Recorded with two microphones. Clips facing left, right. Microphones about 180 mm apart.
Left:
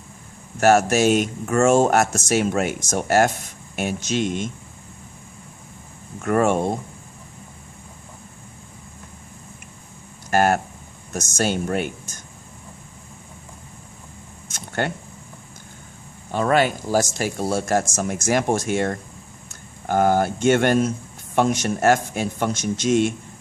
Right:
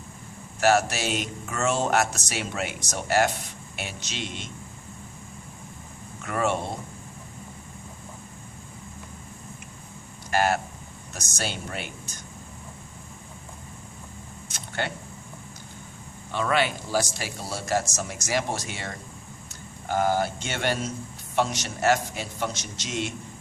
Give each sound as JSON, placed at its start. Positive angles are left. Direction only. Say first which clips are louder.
{"t": 0.6, "sound": "speech", "louder": "left 6 dB", "side_deg": 50}
{"t": 6.2, "sound": "speech", "louder": "left 8 dB", "side_deg": 45}
{"t": 10.3, "sound": "speech", "louder": "left 5 dB", "side_deg": 50}
{"t": 14.4, "sound": "a sound", "louder": "left 6 dB", "side_deg": 45}
{"t": 16.3, "sound": "speech", "louder": "left 6 dB", "side_deg": 45}